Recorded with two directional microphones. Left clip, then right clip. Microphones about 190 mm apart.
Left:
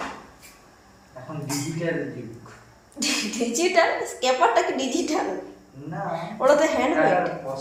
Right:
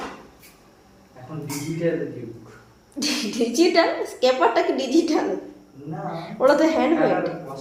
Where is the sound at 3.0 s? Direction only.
50° right (ahead or behind).